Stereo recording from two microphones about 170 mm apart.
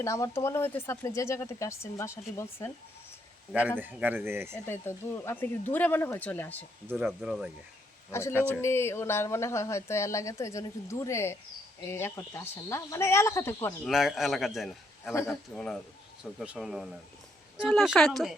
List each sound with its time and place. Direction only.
0.0 s speech: 15° left (ahead or behind)
3.5 s speech: 10° right (ahead or behind)
4.5 s speech: 10° left (ahead or behind)
6.9 s a man's voice: centre (ahead or behind)
8.1 s speech: 15° left (ahead or behind)
13.8 s a man's voice: centre (ahead or behind)